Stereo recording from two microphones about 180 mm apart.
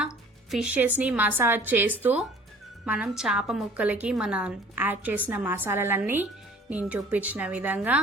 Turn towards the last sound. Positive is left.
turn(degrees=-10)  # may be behind; listen again after turning